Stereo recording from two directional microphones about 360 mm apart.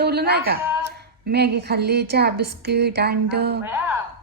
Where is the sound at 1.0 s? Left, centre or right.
Right.